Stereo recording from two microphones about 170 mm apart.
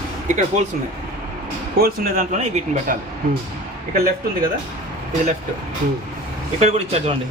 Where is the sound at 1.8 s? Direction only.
60° right (ahead or behind); by 2.9 s 45° right (ahead or behind).